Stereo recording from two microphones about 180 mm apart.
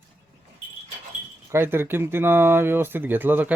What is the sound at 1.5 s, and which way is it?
Speech, 15° right (ahead or behind).